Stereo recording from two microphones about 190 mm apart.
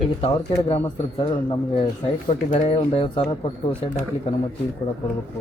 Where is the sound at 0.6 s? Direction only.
30° left (ahead or behind).